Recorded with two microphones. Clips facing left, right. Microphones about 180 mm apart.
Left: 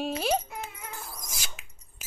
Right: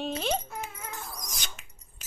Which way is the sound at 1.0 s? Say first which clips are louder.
Right 1 dB; 5° left (ahead or behind).